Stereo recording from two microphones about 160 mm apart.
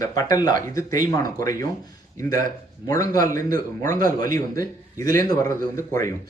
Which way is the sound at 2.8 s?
20° left (ahead or behind).